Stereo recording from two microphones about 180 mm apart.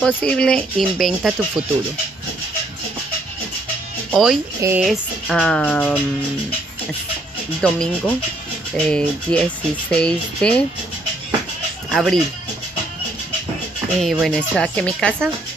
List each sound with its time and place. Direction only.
0.0 s speech: 5° left (ahead or behind)
4.1 s speech: centre (ahead or behind)
4.6 s speech: 15° right (ahead or behind)
4.8 s speech: 5° left (ahead or behind)
7.6 s speech: 5° left (ahead or behind)
11.9 s speech: centre (ahead or behind)
14.0 s speech: centre (ahead or behind)